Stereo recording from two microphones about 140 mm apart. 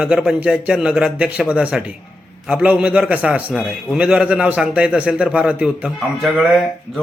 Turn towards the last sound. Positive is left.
turn(degrees=0)  # may be behind; listen again after turning